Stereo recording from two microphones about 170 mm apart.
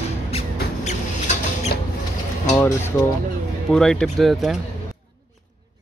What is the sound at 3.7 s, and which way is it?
Speech, 5° left (ahead or behind).